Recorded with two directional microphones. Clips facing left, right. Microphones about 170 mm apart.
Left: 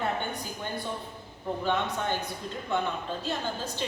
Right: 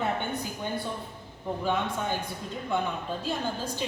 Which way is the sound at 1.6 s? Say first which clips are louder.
Even; 10° right (ahead or behind).